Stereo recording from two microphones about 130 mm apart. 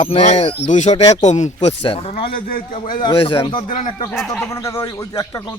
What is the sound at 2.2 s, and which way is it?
Speech, 90° left.